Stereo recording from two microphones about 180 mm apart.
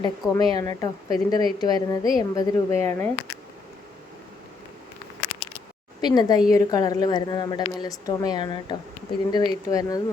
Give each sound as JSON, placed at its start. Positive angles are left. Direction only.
{"t": 0.0, "sound": "a woman's voice", "side_deg": 20}
{"t": 6.0, "sound": "a woman's voice", "side_deg": 25}